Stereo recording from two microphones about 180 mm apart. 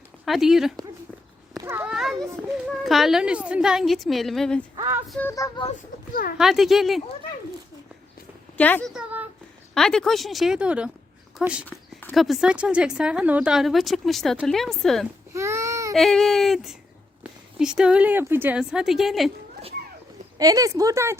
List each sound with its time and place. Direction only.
0.3 s a woman's voice: centre (ahead or behind)
1.6 s children playing: 10° right (ahead or behind)
2.8 s a woman's voice: centre (ahead or behind)
5.2 s speech: 20° left (ahead or behind)
6.3 s a woman's voice: centre (ahead or behind)
8.5 s speech: 10° left (ahead or behind)
8.9 s a sound: 5° right (ahead or behind)
9.7 s a woman's voice: 5° left (ahead or behind)
15.3 s baby cry: 15° right (ahead or behind)
16.0 s a woman's voice: centre (ahead or behind)
20.4 s speech: 20° right (ahead or behind)